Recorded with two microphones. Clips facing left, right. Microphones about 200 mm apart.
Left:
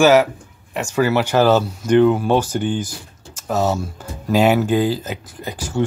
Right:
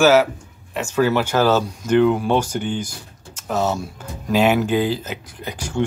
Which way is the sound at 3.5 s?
10° left (ahead or behind).